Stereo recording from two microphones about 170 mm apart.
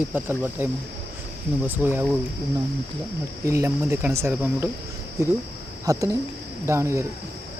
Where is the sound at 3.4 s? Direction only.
15° right (ahead or behind).